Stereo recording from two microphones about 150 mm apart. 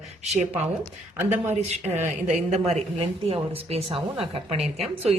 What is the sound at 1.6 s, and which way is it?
A woman's voice, 45° right (ahead or behind).